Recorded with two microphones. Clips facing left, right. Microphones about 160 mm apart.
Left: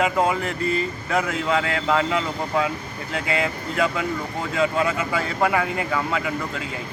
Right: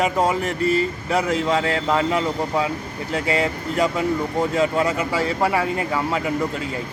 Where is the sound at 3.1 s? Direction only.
35° right (ahead or behind).